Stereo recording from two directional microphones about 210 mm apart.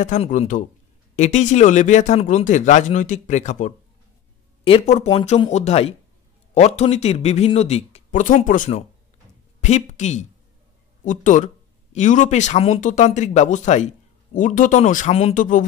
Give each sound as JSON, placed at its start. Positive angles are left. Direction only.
{"t": 0.0, "sound": "speech", "side_deg": 35}